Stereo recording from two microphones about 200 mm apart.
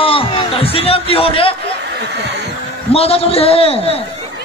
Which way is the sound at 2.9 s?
30° left (ahead or behind).